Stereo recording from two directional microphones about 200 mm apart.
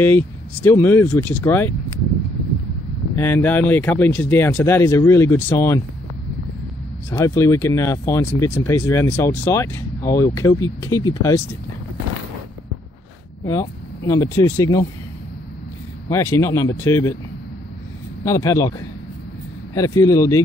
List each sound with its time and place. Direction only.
0.0 s speech: 10° left (ahead or behind)
3.2 s speech: 10° left (ahead or behind)
7.1 s speech: 15° left (ahead or behind)
13.5 s speech: 15° left (ahead or behind)
16.1 s speech: 15° left (ahead or behind)
18.2 s speech: 15° left (ahead or behind)